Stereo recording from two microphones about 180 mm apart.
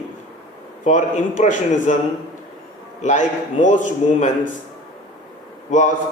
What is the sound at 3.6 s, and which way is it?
Speech, 45° left (ahead or behind).